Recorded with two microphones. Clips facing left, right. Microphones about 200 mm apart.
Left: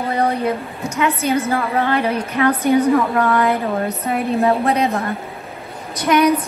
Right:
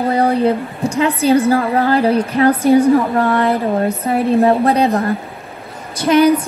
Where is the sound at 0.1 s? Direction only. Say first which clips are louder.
Right 4 dB; 30° right (ahead or behind).